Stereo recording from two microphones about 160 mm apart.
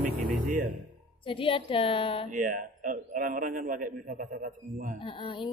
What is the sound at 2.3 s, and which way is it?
A man's voice, 55° right (ahead or behind).